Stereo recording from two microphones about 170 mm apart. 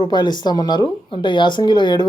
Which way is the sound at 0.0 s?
25° left (ahead or behind).